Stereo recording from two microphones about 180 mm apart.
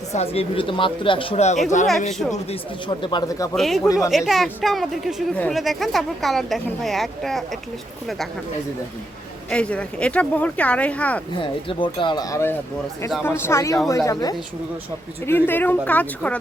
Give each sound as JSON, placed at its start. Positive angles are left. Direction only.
{"t": 0.1, "sound": "speech", "side_deg": 35}
{"t": 3.5, "sound": "speech", "side_deg": 0}
{"t": 9.5, "sound": "speech", "side_deg": 5}
{"t": 11.7, "sound": "speech", "side_deg": 25}